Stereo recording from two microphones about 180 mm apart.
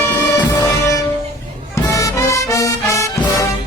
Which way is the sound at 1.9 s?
20° left (ahead or behind).